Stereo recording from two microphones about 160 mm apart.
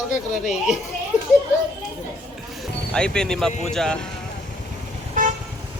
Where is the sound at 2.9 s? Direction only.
5° left (ahead or behind).